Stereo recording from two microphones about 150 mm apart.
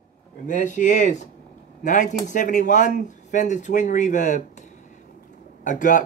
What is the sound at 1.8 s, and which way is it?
Speech, 55° left (ahead or behind).